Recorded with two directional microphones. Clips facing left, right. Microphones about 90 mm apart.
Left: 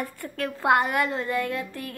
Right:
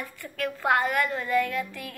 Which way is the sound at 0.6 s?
20° left (ahead or behind).